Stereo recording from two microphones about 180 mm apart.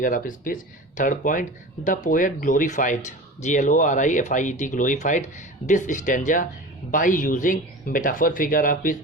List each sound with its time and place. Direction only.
0.0 s speech: 50° left (ahead or behind)